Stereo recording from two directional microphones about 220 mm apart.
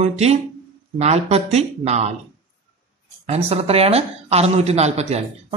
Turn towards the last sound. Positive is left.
turn(degrees=-30)  # may be behind; listen again after turning